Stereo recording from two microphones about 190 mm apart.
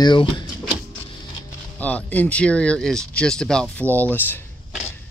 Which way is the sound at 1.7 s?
10° left (ahead or behind).